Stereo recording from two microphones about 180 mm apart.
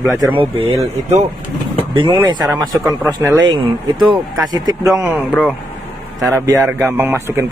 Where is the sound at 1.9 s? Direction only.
30° right (ahead or behind).